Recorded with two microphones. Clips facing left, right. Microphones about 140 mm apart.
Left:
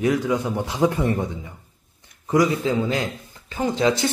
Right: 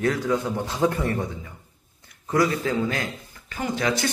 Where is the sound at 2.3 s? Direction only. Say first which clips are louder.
Left 3 dB; 15° left (ahead or behind).